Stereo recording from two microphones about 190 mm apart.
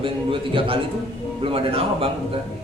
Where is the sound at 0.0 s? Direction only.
25° right (ahead or behind).